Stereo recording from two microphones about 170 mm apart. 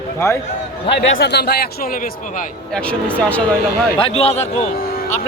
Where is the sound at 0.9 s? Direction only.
75° left (ahead or behind).